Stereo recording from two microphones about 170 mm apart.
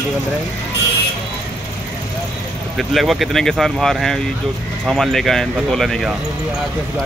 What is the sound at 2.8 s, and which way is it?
Speech, centre (ahead or behind).